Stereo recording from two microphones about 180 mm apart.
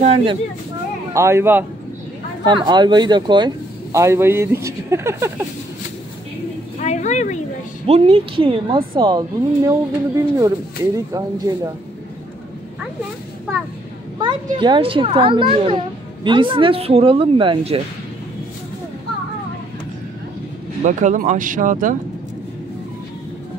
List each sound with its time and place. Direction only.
0.0 s speech: 30° right (ahead or behind)
1.1 s speech: 15° right (ahead or behind)
2.4 s speech: 25° right (ahead or behind)
6.8 s speech: 40° left (ahead or behind)
7.8 s a child's voice: 30° right (ahead or behind)
14.2 s a child's voice: 25° right (ahead or behind)
20.8 s speech: 45° right (ahead or behind)